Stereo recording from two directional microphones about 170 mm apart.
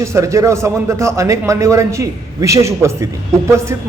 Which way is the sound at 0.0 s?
15° right (ahead or behind).